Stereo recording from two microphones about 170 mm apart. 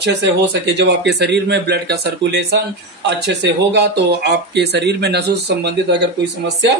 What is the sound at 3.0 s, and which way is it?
Speech, 90° right.